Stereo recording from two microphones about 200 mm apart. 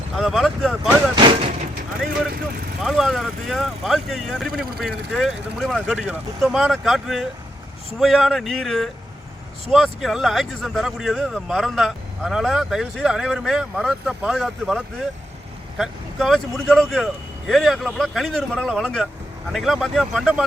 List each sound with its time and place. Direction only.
0.2 s speech: centre (ahead or behind)
1.1 s a sound: 25° right (ahead or behind)
2.8 s speech: centre (ahead or behind)